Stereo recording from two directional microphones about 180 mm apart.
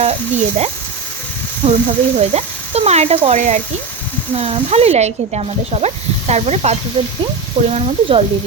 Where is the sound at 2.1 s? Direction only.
35° right (ahead or behind).